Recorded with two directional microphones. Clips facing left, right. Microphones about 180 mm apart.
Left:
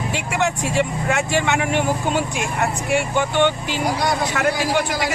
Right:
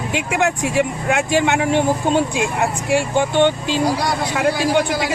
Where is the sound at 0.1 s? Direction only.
15° right (ahead or behind).